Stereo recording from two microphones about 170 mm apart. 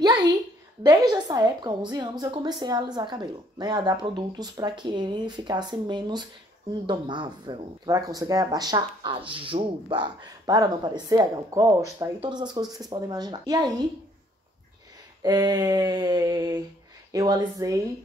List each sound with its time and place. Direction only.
0.0 s a sound: 25° right (ahead or behind)
0.8 s a woman's voice: 25° right (ahead or behind)
15.2 s a woman's voice: 20° right (ahead or behind)